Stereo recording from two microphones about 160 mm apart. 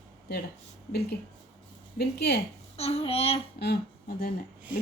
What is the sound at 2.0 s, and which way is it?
Speech, 90° left.